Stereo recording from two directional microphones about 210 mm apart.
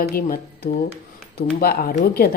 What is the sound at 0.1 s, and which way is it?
A woman's voice, 45° left (ahead or behind).